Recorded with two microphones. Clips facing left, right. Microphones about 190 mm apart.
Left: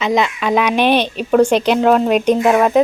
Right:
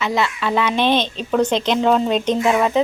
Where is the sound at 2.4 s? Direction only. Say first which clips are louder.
Left 3 dB; 60° left (ahead or behind).